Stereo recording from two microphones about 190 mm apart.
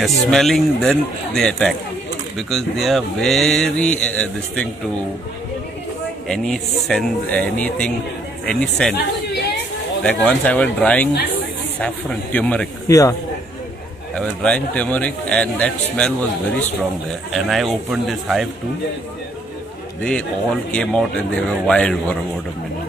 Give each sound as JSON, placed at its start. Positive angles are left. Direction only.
{"t": 0.0, "sound": "speech", "side_deg": 0}
{"t": 6.2, "sound": "speech", "side_deg": 0}
{"t": 8.9, "sound": "chatter", "side_deg": 60}
{"t": 10.0, "sound": "speech", "side_deg": 5}
{"t": 14.1, "sound": "speech", "side_deg": 5}
{"t": 17.3, "sound": "speech", "side_deg": 0}
{"t": 20.0, "sound": "speech", "side_deg": 5}